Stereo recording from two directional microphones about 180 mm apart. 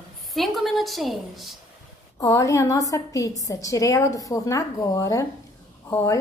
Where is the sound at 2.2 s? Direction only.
20° left (ahead or behind).